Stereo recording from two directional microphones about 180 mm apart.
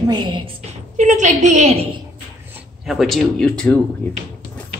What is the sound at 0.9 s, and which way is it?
A woman's voice, 40° right (ahead or behind).